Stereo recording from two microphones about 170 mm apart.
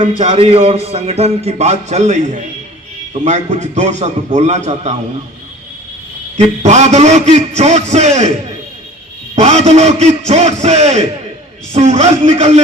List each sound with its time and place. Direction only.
0.2 s a man's voice: 35° right (ahead or behind)
6.3 s a man's voice: 45° right (ahead or behind)
9.3 s a man's voice: 40° right (ahead or behind)